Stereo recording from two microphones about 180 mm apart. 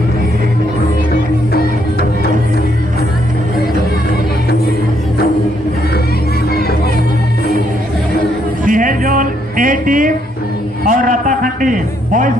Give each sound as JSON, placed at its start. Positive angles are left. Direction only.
{"t": 1.1, "sound": "music", "side_deg": 60}
{"t": 8.6, "sound": "music", "side_deg": -50}
{"t": 10.9, "sound": "a sound", "side_deg": -50}